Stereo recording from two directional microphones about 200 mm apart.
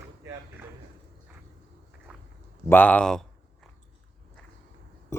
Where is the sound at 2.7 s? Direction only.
10° left (ahead or behind).